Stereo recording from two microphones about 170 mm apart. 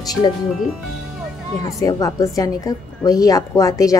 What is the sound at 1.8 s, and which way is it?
A woman's voice, 20° left (ahead or behind).